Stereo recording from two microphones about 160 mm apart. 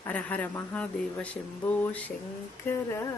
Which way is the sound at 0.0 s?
10° left (ahead or behind).